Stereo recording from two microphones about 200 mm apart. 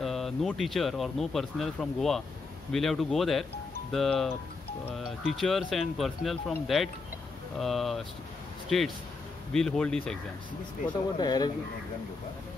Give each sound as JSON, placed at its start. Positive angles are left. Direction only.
{"t": 0.0, "sound": "speech", "side_deg": 0}
{"t": 11.1, "sound": "speech", "side_deg": 20}